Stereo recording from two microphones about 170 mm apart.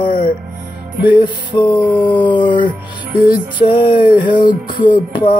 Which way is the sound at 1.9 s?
25° left (ahead or behind).